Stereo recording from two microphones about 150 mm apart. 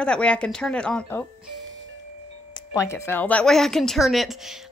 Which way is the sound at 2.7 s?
20° left (ahead or behind).